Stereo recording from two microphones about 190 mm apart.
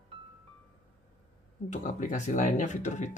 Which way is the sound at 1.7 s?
45° left (ahead or behind).